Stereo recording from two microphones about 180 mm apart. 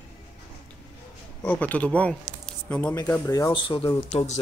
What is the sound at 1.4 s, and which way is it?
Speech, 10° left (ahead or behind).